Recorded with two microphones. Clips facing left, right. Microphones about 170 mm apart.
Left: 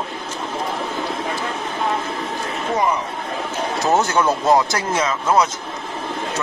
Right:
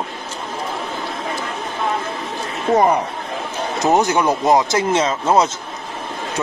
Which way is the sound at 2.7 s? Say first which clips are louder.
Right 6 dB; 50° right (ahead or behind).